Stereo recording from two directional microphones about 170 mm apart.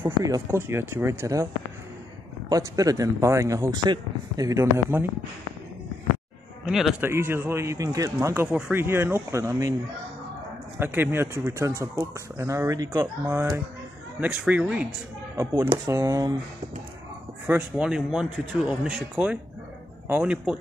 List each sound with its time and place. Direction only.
0.0 s a man's voice: 15° right (ahead or behind)
2.5 s speech: 20° right (ahead or behind)
6.6 s speech: centre (ahead or behind)
7.0 s a man's voice: 15° right (ahead or behind)
10.8 s a man's voice: 15° right (ahead or behind)
15.3 s a man's voice: 20° right (ahead or behind)
17.5 s a man's voice: 5° right (ahead or behind)